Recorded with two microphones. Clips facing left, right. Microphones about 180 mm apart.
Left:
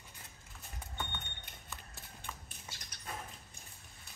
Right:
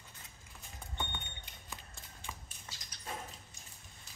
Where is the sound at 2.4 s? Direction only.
60° left (ahead or behind).